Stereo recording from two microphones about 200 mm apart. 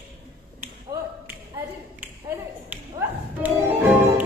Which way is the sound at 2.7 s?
10° right (ahead or behind).